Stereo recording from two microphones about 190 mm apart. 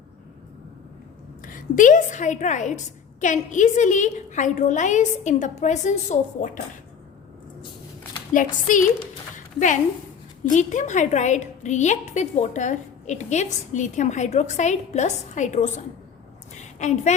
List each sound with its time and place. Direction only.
1.5 s a woman's voice: 45° left (ahead or behind)
8.3 s a woman's voice: 45° left (ahead or behind)
9.3 s a sound: 40° left (ahead or behind)
10.5 s a woman's voice: 40° left (ahead or behind)